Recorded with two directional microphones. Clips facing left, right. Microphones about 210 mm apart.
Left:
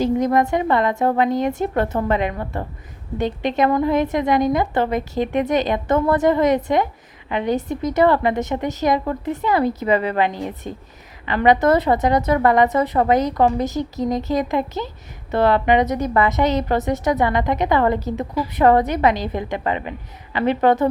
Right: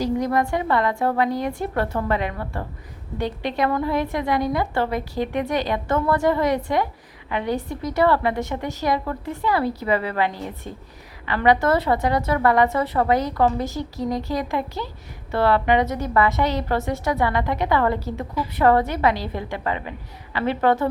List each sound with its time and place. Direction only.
0.0 s a woman's voice: 20° left (ahead or behind)